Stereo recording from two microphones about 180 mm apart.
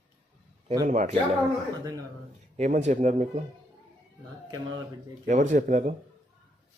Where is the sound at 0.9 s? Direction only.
40° right (ahead or behind).